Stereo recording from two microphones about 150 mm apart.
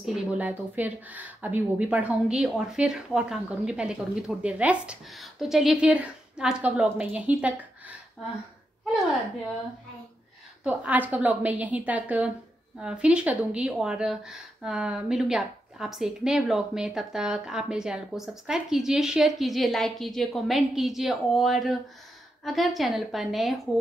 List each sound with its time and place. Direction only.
0.0 s speech: 10° right (ahead or behind)
10.6 s speech: 10° right (ahead or behind)